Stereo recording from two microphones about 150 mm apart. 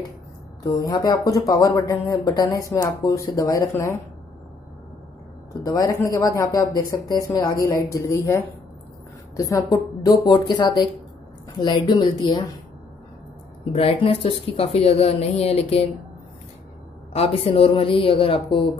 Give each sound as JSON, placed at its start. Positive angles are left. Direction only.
{"t": 0.8, "sound": "speech", "side_deg": 25}
{"t": 5.5, "sound": "speech", "side_deg": 25}
{"t": 13.7, "sound": "speech", "side_deg": 40}
{"t": 17.1, "sound": "speech", "side_deg": 40}